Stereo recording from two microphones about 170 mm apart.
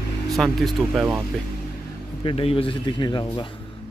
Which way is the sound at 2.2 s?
35° left (ahead or behind).